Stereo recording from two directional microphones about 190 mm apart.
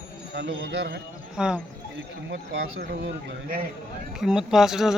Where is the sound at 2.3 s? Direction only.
65° right (ahead or behind).